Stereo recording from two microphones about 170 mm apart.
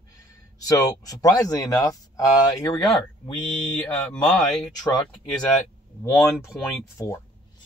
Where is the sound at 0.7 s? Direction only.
20° left (ahead or behind).